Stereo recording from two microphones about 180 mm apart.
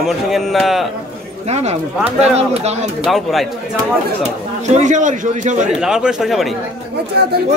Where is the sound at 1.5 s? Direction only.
35° right (ahead or behind).